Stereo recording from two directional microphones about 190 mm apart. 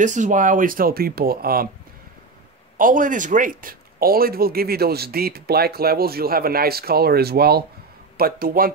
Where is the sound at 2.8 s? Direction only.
45° right (ahead or behind).